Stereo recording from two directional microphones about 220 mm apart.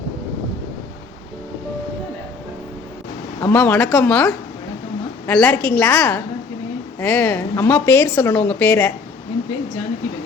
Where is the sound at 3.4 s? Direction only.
10° left (ahead or behind).